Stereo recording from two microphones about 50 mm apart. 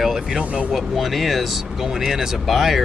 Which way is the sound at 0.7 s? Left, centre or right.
Centre.